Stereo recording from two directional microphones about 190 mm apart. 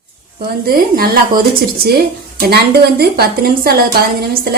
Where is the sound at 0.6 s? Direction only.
50° right (ahead or behind).